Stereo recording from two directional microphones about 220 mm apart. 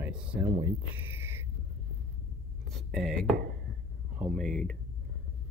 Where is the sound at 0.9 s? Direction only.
10° right (ahead or behind).